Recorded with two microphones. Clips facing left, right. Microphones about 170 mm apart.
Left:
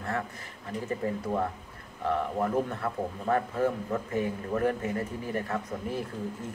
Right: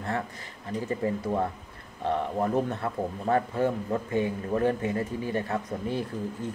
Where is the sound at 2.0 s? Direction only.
35° right (ahead or behind).